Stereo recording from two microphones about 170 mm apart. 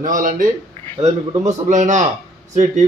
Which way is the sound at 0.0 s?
55° right (ahead or behind).